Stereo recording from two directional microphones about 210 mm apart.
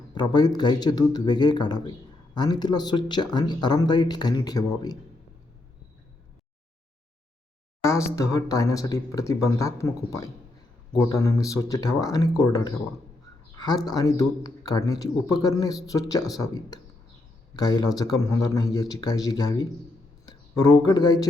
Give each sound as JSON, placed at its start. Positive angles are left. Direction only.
{"t": 0.1, "sound": "speech", "side_deg": 20}
{"t": 8.1, "sound": "speech", "side_deg": 15}